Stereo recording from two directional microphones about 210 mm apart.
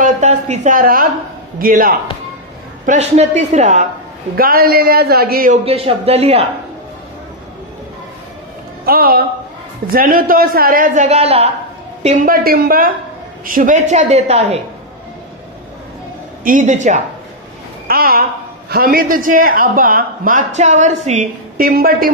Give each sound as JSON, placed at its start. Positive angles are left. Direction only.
{"t": 0.0, "sound": "a woman's voice", "side_deg": -35}
{"t": 4.4, "sound": "a man's voice", "side_deg": -45}
{"t": 5.7, "sound": "a man's voice", "side_deg": -30}
{"t": 8.8, "sound": "a man's voice", "side_deg": -45}
{"t": 12.3, "sound": "a man's voice", "side_deg": -45}
{"t": 16.4, "sound": "a woman's voice", "side_deg": -35}
{"t": 17.8, "sound": "a woman's voice", "side_deg": -45}